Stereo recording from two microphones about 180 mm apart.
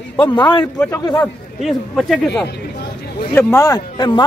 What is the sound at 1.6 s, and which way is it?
Speech, centre (ahead or behind).